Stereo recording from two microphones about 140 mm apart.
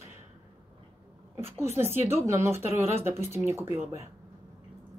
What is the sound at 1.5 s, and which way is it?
Speech, 20° right (ahead or behind).